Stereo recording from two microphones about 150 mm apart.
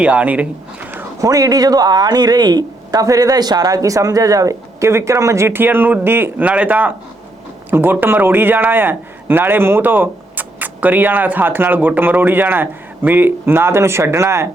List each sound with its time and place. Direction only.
0.0 s a man's voice: 10° right (ahead or behind)